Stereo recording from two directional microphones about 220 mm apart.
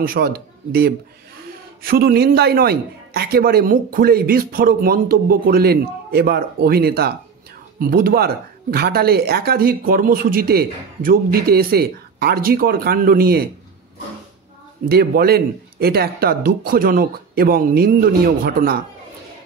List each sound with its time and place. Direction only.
0.0 s speech: 40° right (ahead or behind)
14.9 s speech: 45° right (ahead or behind)